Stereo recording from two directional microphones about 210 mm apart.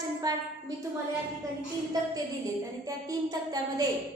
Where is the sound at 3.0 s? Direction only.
15° right (ahead or behind).